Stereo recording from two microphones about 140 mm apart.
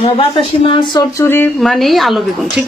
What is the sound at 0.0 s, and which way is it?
Speech, 45° left (ahead or behind).